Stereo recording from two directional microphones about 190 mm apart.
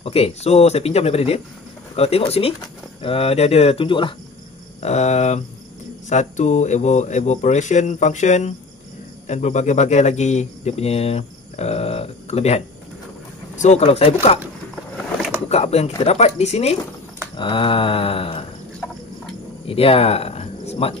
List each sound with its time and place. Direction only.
0.0 s speech: 30° left (ahead or behind)
15.4 s speech: 35° left (ahead or behind)
19.6 s cricket: 30° left (ahead or behind)